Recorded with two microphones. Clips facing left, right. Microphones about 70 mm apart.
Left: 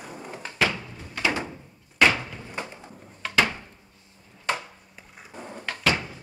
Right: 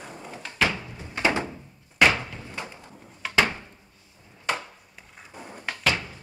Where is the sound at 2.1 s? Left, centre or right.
Centre.